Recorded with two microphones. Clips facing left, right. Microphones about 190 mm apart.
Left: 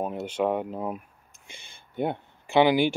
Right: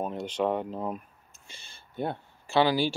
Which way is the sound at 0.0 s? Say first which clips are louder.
Left 2 dB; 10° left (ahead or behind).